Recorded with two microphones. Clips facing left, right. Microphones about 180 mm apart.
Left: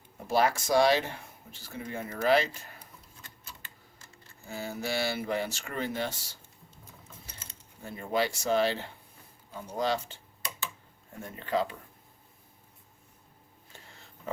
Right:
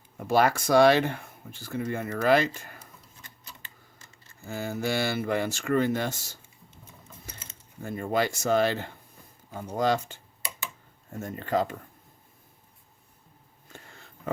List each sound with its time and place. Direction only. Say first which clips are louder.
0.3 s speech: right 4 dB; 60° right (ahead or behind)
4.4 s speech: right 5 dB; 50° right (ahead or behind)
7.9 s speech: right 3 dB; 50° right (ahead or behind)
11.2 s speech: right 3 dB; 45° right (ahead or behind)